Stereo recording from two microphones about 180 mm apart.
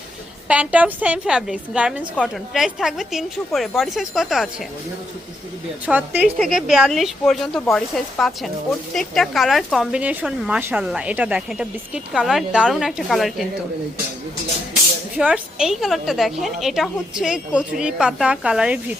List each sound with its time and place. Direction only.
0.4 s a woman's voice: 5° right (ahead or behind)
5.8 s speech: 10° right (ahead or behind)
15.2 s speech: 5° right (ahead or behind)